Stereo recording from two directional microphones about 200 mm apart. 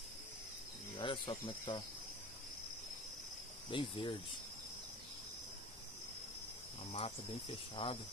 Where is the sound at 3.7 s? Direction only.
25° left (ahead or behind).